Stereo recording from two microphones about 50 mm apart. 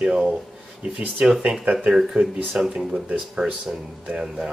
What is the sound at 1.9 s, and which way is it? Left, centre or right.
Speech, centre.